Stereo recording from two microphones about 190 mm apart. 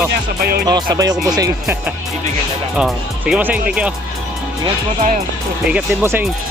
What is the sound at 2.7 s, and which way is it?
Speech, 5° right (ahead or behind).